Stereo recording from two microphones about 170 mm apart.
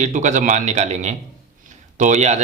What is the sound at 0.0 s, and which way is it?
A man's voice, 45° right (ahead or behind).